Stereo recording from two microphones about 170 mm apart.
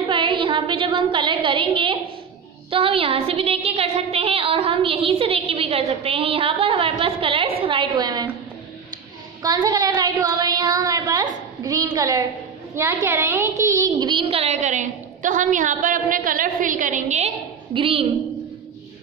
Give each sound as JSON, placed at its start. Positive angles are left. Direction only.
{"t": 0.1, "sound": "a woman's voice", "side_deg": -30}
{"t": 9.4, "sound": "a woman's voice", "side_deg": -25}
{"t": 14.2, "sound": "a woman's voice", "side_deg": -35}
{"t": 17.7, "sound": "a woman's voice", "side_deg": -30}